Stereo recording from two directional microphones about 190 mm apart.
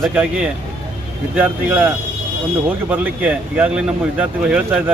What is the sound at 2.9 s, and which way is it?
Speech, 5° right (ahead or behind).